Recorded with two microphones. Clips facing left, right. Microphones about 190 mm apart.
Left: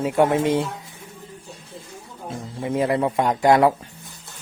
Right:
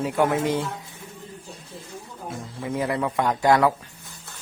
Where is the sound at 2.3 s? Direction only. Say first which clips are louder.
Left 4 dB; 25° left (ahead or behind).